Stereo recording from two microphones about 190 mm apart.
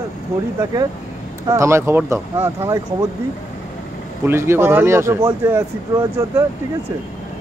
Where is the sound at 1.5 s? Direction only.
15° right (ahead or behind).